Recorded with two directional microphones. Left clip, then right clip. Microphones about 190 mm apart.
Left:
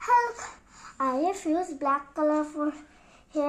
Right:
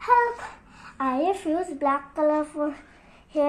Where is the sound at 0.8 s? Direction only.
10° left (ahead or behind).